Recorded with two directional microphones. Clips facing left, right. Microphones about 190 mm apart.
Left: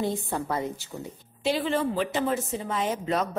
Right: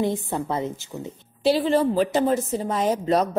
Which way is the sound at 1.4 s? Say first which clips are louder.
Right 6 dB; 35° right (ahead or behind).